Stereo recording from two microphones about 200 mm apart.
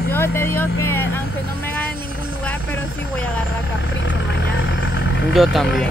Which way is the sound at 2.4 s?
5° left (ahead or behind).